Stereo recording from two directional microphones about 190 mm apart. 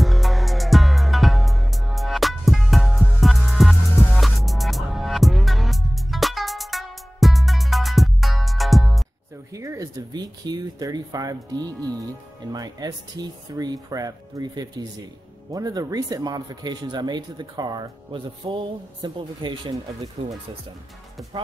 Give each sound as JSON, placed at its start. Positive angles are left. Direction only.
{"t": 0.0, "sound": "music", "side_deg": 0}
{"t": 9.5, "sound": "speech", "side_deg": -15}